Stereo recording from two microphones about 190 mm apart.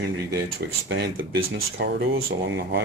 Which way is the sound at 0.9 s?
80° right.